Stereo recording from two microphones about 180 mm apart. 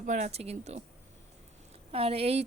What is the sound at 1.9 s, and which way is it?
Speech, 30° right (ahead or behind).